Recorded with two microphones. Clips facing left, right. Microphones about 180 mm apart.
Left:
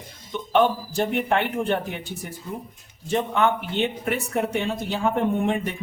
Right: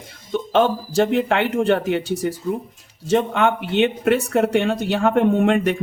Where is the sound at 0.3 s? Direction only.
90° right.